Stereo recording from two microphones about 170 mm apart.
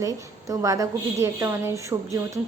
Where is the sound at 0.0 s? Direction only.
20° right (ahead or behind).